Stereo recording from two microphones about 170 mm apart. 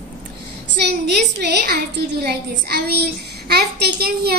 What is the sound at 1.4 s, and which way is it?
Speech, 85° right.